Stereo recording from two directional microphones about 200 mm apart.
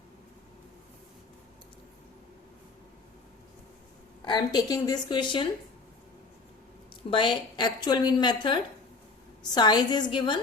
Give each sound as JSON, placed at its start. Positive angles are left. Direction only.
{"t": 4.2, "sound": "a woman's voice", "side_deg": 20}
{"t": 7.1, "sound": "a woman's voice", "side_deg": 25}